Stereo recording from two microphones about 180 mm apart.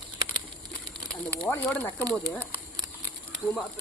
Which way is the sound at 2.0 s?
20° right (ahead or behind).